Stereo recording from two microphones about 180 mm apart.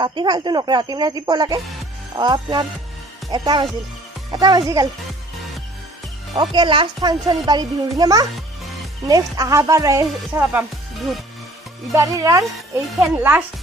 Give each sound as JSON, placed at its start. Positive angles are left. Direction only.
{"t": 0.0, "sound": "speech", "side_deg": -25}
{"t": 6.3, "sound": "speech", "side_deg": -25}
{"t": 11.9, "sound": "speech", "side_deg": -15}